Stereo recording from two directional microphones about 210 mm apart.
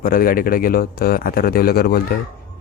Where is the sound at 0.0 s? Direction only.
45° left (ahead or behind).